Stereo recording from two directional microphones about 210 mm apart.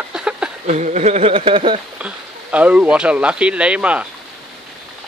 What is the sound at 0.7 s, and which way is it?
Speech, 35° right (ahead or behind).